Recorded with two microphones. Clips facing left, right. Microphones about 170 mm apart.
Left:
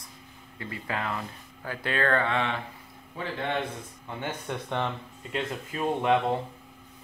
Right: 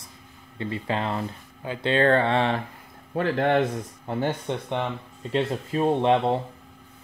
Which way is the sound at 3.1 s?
60° right (ahead or behind).